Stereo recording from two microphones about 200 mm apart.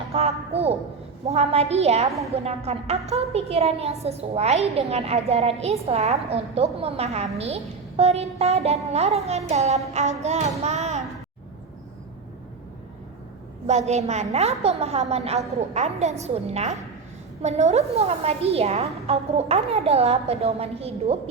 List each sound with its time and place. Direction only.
0.1 s a sound: 30° right (ahead or behind)
1.2 s a woman's voice: 30° right (ahead or behind)
13.7 s a woman's voice: 35° right (ahead or behind)